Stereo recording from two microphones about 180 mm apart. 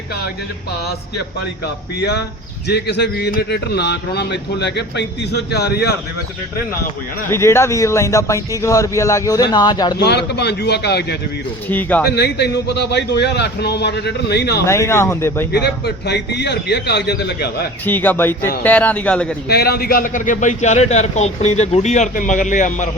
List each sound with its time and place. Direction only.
2.0 s speech: 65° left (ahead or behind)
7.3 s a man's voice: 15° left (ahead or behind)
10.0 s speech: 70° left (ahead or behind)
11.7 s a man's voice: 10° left (ahead or behind)
12.1 s speech: 65° left (ahead or behind)
14.7 s a man's voice: 15° left (ahead or behind)
15.5 s speech: 65° left (ahead or behind)
17.8 s a man's voice: 10° left (ahead or behind)
19.5 s a man's voice: 60° left (ahead or behind); by 22.9 s 45° left (ahead or behind)